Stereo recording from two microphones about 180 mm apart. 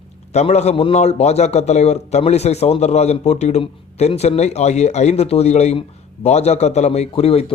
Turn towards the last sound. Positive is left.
turn(degrees=35)  # may be behind; listen again after turning